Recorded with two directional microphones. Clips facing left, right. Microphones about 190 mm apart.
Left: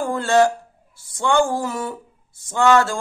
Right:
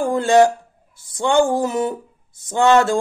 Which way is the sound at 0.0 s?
15° right (ahead or behind).